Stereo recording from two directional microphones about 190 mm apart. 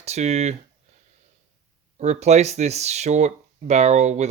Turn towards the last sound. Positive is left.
turn(degrees=-35)  # may be behind; listen again after turning